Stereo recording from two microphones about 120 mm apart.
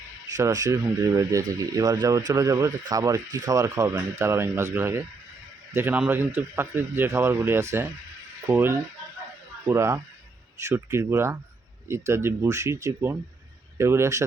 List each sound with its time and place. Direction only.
0.3 s speech: 30° right (ahead or behind)